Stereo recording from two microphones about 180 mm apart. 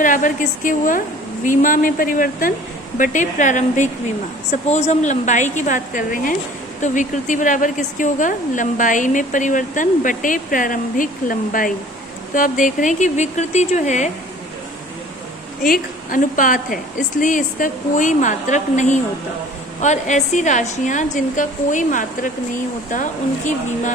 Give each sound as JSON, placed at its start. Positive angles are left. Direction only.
{"t": 0.0, "sound": "a woman's voice", "side_deg": 45}
{"t": 15.6, "sound": "a woman's voice", "side_deg": 50}